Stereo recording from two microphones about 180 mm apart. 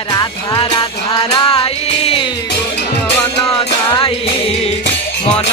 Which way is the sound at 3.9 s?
30° left (ahead or behind).